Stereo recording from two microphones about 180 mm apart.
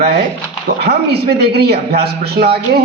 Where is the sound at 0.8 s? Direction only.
60° right (ahead or behind).